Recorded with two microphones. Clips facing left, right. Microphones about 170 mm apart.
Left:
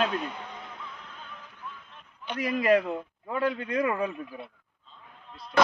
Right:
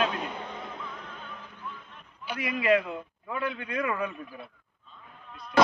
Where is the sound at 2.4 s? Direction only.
40° left (ahead or behind).